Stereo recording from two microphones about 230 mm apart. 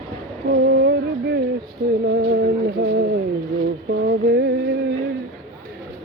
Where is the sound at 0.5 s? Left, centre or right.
Right.